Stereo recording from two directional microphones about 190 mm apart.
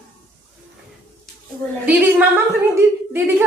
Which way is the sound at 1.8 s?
10° right (ahead or behind).